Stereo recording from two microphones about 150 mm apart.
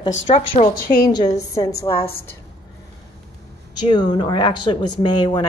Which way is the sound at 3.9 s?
30° left (ahead or behind).